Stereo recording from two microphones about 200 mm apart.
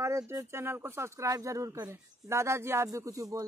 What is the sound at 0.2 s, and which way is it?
Speech, 10° right (ahead or behind).